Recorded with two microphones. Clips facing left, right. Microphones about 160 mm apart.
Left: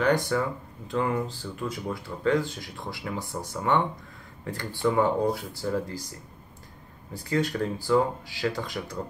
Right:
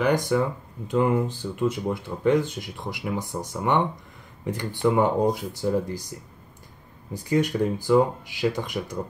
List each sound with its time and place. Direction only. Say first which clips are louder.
0.0 s speech: right 2 dB; 15° right (ahead or behind)
7.2 s speech: right 4 dB; 15° right (ahead or behind)